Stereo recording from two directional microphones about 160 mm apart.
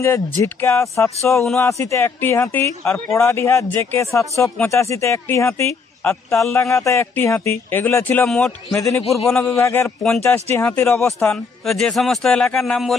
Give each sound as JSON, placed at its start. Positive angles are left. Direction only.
{"t": 0.0, "sound": "speech", "side_deg": 15}
{"t": 9.0, "sound": "a man's voice", "side_deg": 0}
{"t": 9.6, "sound": "speech", "side_deg": 15}
{"t": 10.0, "sound": "a man's voice", "side_deg": 5}